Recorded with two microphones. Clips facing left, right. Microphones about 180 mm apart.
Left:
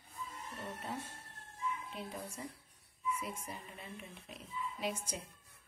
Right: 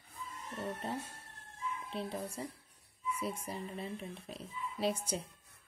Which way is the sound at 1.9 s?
30° right (ahead or behind).